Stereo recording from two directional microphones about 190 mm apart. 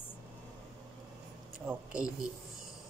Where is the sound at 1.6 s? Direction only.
5° right (ahead or behind).